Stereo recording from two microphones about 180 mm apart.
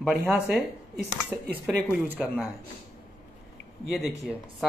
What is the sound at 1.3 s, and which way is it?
Speech, 10° right (ahead or behind).